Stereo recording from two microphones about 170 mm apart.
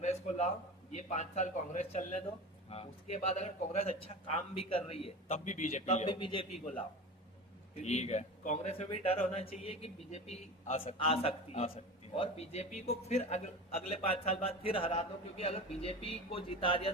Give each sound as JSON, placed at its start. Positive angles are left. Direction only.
{"t": 0.0, "sound": "a sound", "side_deg": 40}
{"t": 0.9, "sound": "a man's voice", "side_deg": 45}
{"t": 5.0, "sound": "a man's voice", "side_deg": 45}
{"t": 6.1, "sound": "a man's voice", "side_deg": 30}